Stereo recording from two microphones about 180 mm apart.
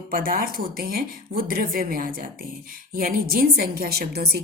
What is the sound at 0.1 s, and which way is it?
A woman's voice, 55° right (ahead or behind).